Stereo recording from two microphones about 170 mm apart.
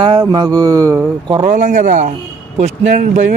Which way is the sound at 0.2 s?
20° right (ahead or behind).